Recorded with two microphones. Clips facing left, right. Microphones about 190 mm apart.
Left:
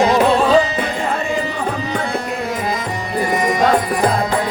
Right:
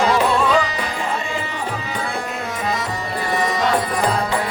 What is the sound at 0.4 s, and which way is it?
Music, 30° left (ahead or behind).